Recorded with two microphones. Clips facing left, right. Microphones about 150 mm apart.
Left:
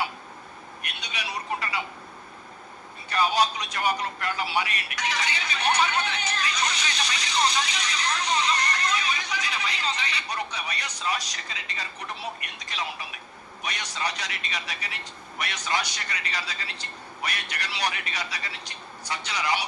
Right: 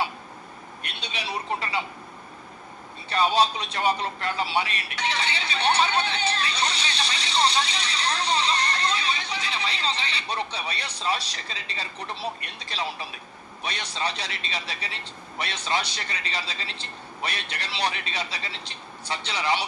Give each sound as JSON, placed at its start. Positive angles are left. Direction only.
{"t": 0.8, "sound": "a man's voice", "side_deg": -30}
{"t": 3.1, "sound": "a man's voice", "side_deg": -30}